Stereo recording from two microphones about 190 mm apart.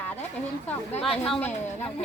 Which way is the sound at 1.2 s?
5° left (ahead or behind).